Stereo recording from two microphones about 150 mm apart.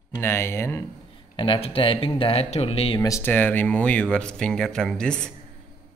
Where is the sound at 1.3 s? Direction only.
35° left (ahead or behind).